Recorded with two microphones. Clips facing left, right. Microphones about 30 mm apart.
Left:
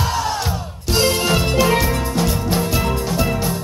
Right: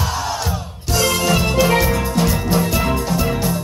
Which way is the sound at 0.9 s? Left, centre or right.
Left.